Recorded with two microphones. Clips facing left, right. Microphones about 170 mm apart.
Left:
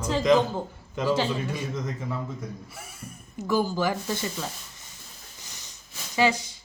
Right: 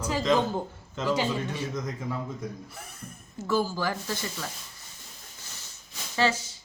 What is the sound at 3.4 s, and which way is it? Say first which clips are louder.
Speech: left 2 dB; 15° left (ahead or behind).